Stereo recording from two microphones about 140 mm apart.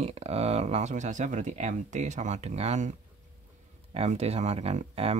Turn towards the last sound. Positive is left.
turn(degrees=-45)  # may be behind; listen again after turning